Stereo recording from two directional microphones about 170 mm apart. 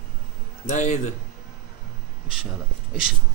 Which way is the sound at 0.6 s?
45° left (ahead or behind).